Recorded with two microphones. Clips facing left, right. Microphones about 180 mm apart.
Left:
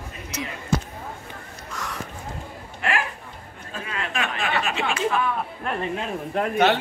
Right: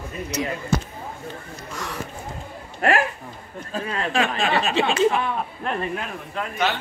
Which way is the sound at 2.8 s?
40° right (ahead or behind).